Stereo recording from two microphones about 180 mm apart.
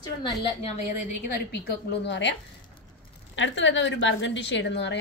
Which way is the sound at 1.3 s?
60° left (ahead or behind).